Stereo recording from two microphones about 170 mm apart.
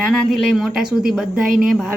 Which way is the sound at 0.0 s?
Centre (ahead or behind).